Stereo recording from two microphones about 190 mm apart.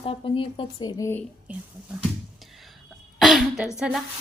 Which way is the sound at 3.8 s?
5° right (ahead or behind).